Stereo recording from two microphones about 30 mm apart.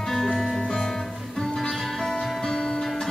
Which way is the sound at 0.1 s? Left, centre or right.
Centre.